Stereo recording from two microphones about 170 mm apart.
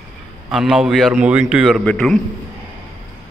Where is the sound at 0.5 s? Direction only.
Centre (ahead or behind).